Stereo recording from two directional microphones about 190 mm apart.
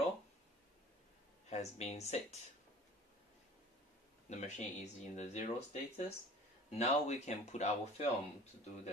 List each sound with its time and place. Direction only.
1.5 s speech: 35° left (ahead or behind)
4.3 s speech: 40° left (ahead or behind)